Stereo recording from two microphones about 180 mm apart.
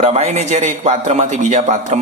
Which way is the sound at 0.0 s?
35° right (ahead or behind).